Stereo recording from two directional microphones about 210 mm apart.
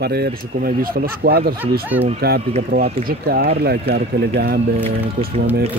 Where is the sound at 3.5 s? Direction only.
45° right (ahead or behind).